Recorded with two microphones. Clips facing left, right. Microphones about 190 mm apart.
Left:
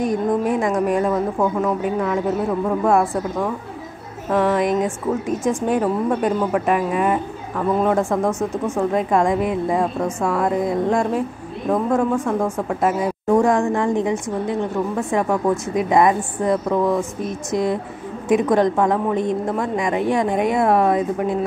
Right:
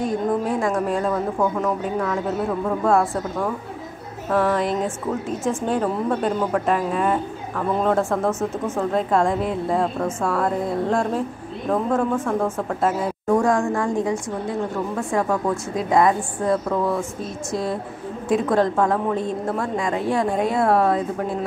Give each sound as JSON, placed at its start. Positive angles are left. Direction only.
{"t": 0.0, "sound": "a woman's voice", "side_deg": 15}
{"t": 2.8, "sound": "a woman's voice", "side_deg": 15}